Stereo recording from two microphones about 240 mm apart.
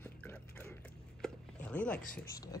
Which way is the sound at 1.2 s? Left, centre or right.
Centre.